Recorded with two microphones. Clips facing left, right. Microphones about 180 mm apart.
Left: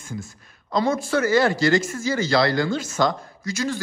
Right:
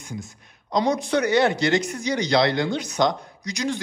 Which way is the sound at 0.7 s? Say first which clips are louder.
Even; 20° right (ahead or behind).